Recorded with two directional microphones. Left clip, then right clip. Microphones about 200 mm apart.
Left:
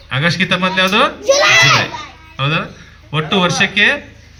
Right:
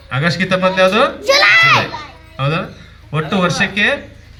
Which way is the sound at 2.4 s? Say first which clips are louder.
Left 2 dB; 15° left (ahead or behind).